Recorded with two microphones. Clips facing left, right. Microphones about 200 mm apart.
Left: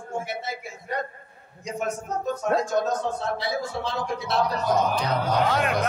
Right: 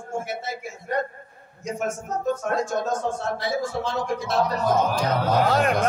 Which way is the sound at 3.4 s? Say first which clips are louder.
Right 2 dB; 50° right (ahead or behind).